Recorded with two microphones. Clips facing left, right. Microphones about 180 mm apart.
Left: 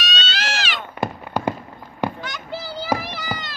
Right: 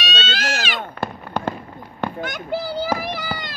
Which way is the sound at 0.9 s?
15° left (ahead or behind).